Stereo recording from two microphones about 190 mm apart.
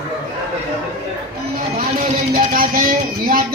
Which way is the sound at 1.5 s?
45° right (ahead or behind).